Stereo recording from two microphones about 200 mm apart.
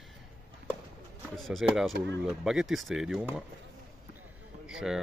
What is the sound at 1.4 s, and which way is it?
Speech, centre (ahead or behind).